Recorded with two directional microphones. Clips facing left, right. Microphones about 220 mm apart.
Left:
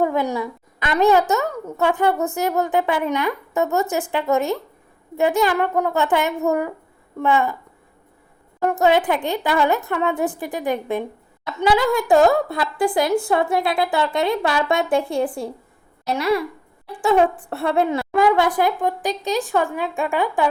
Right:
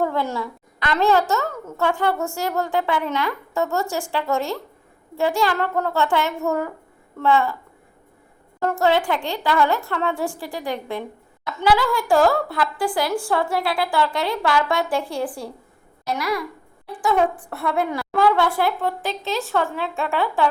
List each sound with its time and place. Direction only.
0.0 s a woman's voice: 15° left (ahead or behind)
8.6 s a woman's voice: 20° left (ahead or behind)